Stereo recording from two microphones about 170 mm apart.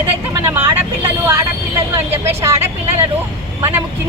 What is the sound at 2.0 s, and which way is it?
Speech, 15° right (ahead or behind).